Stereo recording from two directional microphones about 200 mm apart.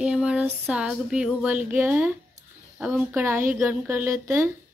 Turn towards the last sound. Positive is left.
turn(degrees=-15)  # may be behind; listen again after turning